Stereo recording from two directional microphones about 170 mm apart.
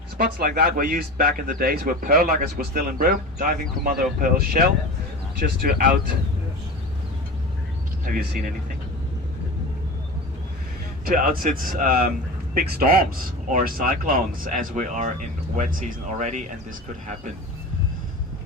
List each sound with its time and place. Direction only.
0.2 s speech: 60° right (ahead or behind)
8.0 s speech: 55° right (ahead or behind)
11.0 s speech: 55° right (ahead or behind)